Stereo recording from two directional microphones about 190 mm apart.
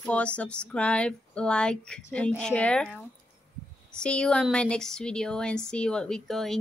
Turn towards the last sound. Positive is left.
turn(degrees=0)  # may be behind; listen again after turning